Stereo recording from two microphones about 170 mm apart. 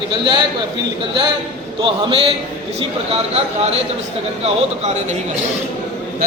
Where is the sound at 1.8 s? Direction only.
30° right (ahead or behind).